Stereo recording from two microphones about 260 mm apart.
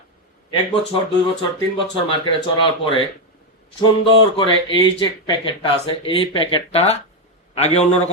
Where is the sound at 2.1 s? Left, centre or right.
Centre.